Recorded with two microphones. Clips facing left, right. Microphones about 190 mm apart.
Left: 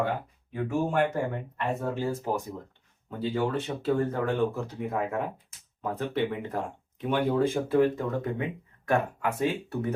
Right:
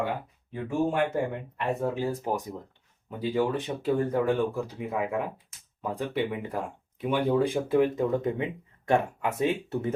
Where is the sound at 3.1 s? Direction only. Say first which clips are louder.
Right 2 dB; 15° right (ahead or behind).